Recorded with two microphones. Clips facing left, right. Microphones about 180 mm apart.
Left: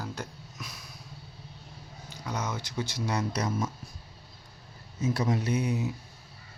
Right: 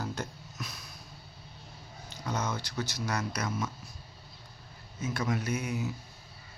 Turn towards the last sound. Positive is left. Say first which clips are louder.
# left 4 dB
turn(degrees=30)  # may be behind; listen again after turning